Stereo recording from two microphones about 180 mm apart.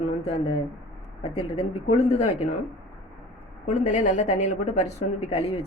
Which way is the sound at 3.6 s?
40° left (ahead or behind).